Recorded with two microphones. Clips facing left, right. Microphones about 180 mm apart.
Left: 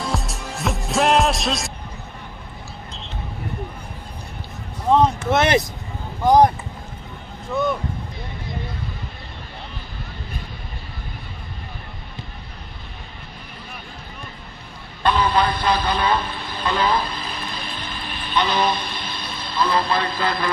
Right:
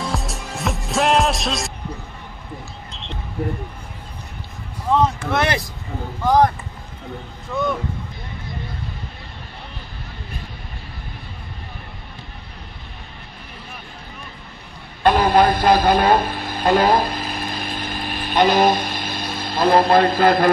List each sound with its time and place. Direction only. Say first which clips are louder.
0.0 s music: even; centre (ahead or behind)
4.9 s speech: left 2 dB; 20° left (ahead or behind)
15.0 s a man's voice: right 5 dB; 50° right (ahead or behind)